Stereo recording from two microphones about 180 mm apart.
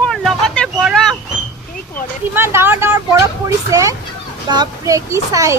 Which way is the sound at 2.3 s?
15° right (ahead or behind).